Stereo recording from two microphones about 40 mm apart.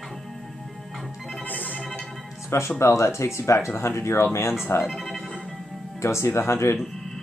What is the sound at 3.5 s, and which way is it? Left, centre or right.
Speech, left.